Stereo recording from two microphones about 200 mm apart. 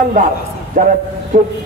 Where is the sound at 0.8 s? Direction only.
40° right (ahead or behind).